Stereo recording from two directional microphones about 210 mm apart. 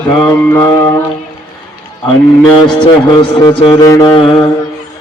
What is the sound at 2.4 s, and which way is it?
Mantra, 20° left (ahead or behind).